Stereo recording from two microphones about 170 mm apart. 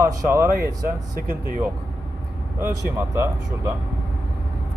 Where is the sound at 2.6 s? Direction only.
15° right (ahead or behind).